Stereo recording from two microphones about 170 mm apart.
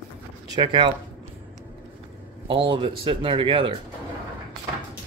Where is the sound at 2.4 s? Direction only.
30° right (ahead or behind).